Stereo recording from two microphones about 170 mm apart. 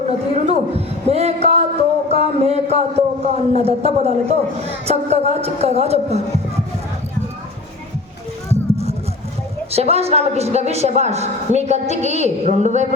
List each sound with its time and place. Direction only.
0.3 s a woman's voice: 35° right (ahead or behind)
9.7 s a woman's voice: 35° right (ahead or behind)